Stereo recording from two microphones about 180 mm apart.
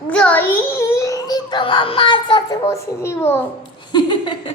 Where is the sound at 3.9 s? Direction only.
25° left (ahead or behind).